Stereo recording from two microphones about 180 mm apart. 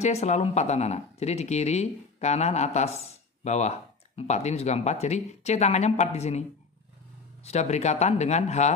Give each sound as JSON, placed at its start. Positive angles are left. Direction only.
{"t": 0.0, "sound": "speech", "side_deg": 40}
{"t": 7.4, "sound": "speech", "side_deg": 40}